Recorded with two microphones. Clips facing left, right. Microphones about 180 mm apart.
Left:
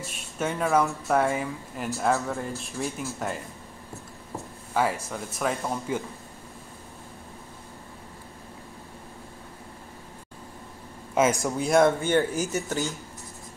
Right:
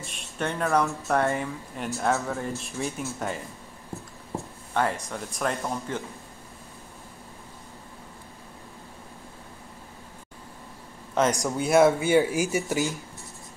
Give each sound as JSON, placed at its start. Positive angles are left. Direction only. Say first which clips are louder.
{"t": 0.0, "sound": "speech", "louder": "left 1 dB", "side_deg": 5}
{"t": 5.0, "sound": "speech", "louder": "even", "side_deg": 5}
{"t": 11.1, "sound": "speech", "louder": "left 1 dB", "side_deg": 5}